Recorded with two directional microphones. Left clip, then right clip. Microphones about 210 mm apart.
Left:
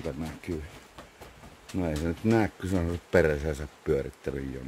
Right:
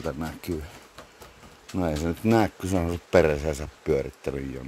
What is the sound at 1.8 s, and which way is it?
Speech, 20° right (ahead or behind).